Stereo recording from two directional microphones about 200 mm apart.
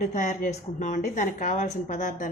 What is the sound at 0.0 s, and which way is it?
Speech, 40° left (ahead or behind).